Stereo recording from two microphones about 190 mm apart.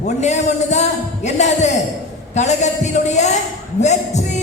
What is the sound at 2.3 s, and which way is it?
Speech, 40° left (ahead or behind).